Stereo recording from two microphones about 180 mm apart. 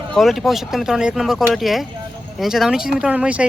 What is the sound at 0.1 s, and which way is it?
Speech, centre (ahead or behind).